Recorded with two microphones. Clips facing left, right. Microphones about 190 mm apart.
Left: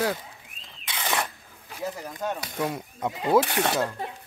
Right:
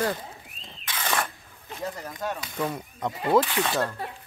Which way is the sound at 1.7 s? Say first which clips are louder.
Left 1 dB; 5° left (ahead or behind).